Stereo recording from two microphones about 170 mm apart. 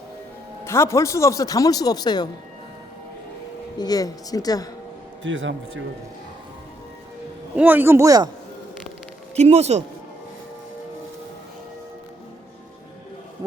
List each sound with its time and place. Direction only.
0.6 s a man's voice: 15° left (ahead or behind)
3.8 s a man's voice: 20° left (ahead or behind)
5.2 s speech: 90° right
7.5 s speech: 10° right (ahead or behind)
9.3 s speech: 40° right (ahead or behind)